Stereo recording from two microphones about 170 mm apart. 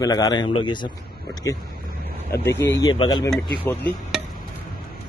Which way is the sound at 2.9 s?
25° left (ahead or behind).